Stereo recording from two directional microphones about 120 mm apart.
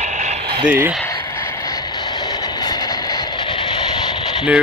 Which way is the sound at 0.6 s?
15° right (ahead or behind).